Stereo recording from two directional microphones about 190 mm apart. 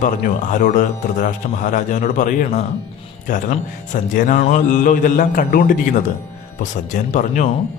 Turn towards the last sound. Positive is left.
turn(degrees=40)  # may be behind; listen again after turning